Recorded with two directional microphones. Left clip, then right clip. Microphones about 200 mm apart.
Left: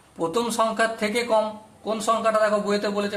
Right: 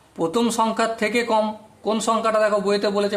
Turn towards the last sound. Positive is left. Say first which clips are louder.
# right 4 dB
turn(degrees=-45)  # may be behind; listen again after turning